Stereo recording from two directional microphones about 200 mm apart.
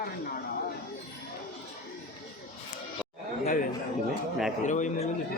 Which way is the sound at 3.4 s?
40° left (ahead or behind).